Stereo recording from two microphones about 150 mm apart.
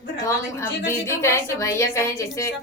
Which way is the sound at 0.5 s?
20° left (ahead or behind).